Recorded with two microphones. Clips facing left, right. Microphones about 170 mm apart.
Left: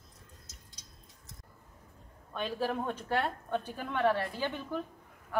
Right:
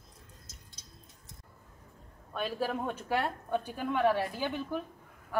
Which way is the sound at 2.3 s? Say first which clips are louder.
Even; 5° right (ahead or behind).